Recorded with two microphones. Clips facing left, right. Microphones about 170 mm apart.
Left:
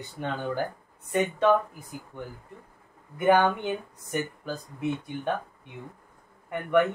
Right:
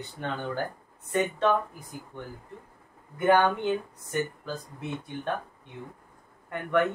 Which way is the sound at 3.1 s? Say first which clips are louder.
Left 1 dB; 15° left (ahead or behind).